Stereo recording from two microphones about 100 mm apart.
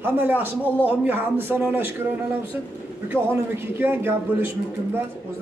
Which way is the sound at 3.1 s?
15° left (ahead or behind).